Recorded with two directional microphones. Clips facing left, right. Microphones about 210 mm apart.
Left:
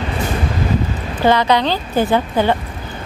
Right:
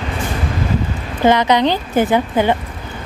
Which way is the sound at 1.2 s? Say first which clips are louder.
Right 1 dB; 20° right (ahead or behind).